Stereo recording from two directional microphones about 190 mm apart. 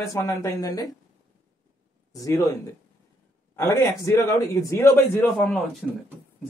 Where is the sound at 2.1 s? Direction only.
20° left (ahead or behind).